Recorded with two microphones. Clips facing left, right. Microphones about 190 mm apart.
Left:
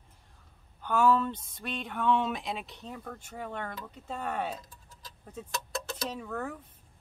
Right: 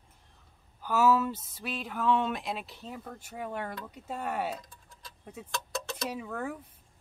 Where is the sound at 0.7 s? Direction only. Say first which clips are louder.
Even; 5° right (ahead or behind).